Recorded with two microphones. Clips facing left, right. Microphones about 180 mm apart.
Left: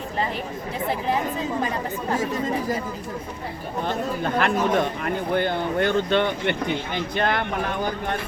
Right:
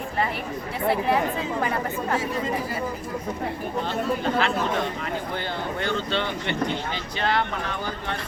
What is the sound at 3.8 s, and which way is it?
Speech, 50° left (ahead or behind).